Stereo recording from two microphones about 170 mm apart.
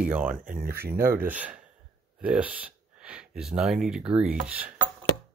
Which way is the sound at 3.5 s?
5° right (ahead or behind).